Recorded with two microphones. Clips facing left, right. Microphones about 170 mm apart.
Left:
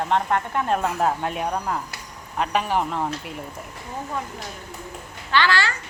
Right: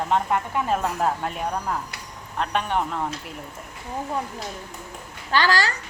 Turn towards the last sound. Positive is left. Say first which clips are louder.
# even
turn(degrees=-40)  # may be behind; listen again after turning